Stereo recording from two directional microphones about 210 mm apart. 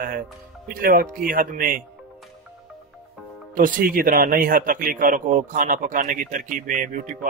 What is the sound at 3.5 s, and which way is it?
A man's voice, 40° right (ahead or behind).